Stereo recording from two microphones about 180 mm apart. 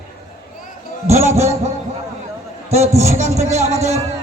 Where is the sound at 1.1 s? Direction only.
40° right (ahead or behind).